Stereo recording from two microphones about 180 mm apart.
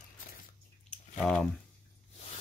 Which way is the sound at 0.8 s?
5° left (ahead or behind).